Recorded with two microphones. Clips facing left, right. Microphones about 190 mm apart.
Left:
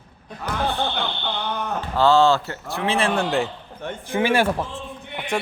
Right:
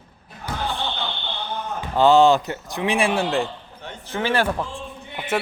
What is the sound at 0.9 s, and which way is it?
Fire alarm, 70° left (ahead or behind).